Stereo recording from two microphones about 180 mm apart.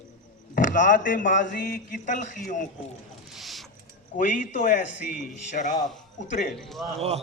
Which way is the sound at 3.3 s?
Centre (ahead or behind).